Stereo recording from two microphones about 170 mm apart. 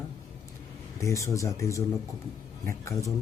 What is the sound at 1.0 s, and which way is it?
Speech, 20° left (ahead or behind).